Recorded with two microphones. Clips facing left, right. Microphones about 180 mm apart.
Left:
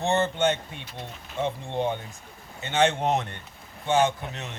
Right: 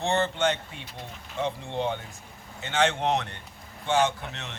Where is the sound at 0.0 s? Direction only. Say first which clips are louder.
Left 2 dB; 20° left (ahead or behind).